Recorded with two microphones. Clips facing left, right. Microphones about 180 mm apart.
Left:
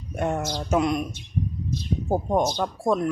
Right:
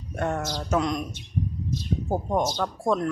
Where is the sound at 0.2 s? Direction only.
15° left (ahead or behind).